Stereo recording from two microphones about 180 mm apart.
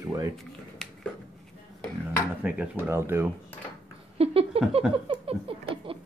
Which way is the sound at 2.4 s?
10° right (ahead or behind).